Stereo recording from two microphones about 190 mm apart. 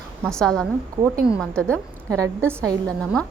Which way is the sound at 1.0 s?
15° right (ahead or behind).